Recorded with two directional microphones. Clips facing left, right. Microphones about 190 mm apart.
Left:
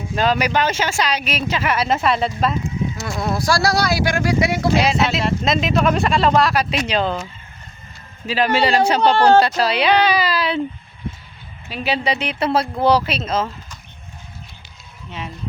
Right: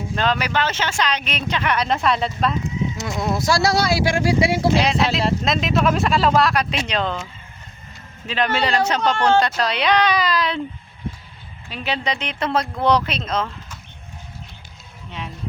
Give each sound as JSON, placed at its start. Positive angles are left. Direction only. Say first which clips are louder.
{"t": 0.2, "sound": "speech", "louder": "left 3 dB", "side_deg": 10}
{"t": 3.0, "sound": "speech", "louder": "even", "side_deg": -20}
{"t": 4.8, "sound": "speech", "louder": "left 1 dB", "side_deg": 5}
{"t": 8.3, "sound": "speech", "louder": "left 4 dB", "side_deg": 5}
{"t": 9.0, "sound": "speech", "louder": "left 6 dB", "side_deg": 35}
{"t": 9.6, "sound": "speech", "louder": "left 3 dB", "side_deg": 5}
{"t": 11.7, "sound": "speech", "louder": "left 4 dB", "side_deg": 5}